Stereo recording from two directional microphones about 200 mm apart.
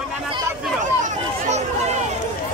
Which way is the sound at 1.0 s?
35° right (ahead or behind).